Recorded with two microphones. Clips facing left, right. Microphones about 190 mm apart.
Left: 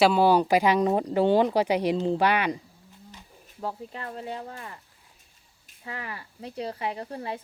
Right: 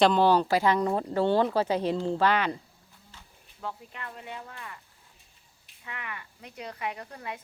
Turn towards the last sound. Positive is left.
turn(degrees=30)  # may be behind; listen again after turning